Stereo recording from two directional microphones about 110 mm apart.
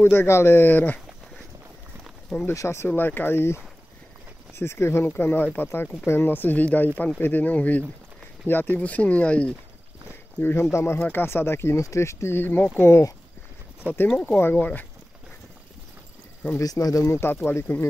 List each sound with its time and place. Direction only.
0.0 s speech: 20° left (ahead or behind)
2.0 s a sound: centre (ahead or behind)
2.4 s speech: 25° left (ahead or behind)
2.9 s speech: 15° left (ahead or behind)
10.4 s speech: 20° left (ahead or behind)
13.9 s speech: 15° right (ahead or behind)
14.2 s speech: 15° left (ahead or behind)
16.5 s speech: 30° left (ahead or behind)
17.2 s speech: 20° left (ahead or behind)